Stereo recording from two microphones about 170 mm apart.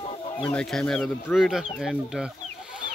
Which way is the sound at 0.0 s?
35° left (ahead or behind).